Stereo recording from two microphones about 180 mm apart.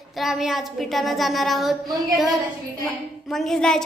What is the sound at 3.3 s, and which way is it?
Child singing, centre (ahead or behind).